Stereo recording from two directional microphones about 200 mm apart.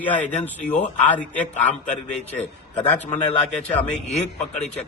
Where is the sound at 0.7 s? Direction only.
35° left (ahead or behind).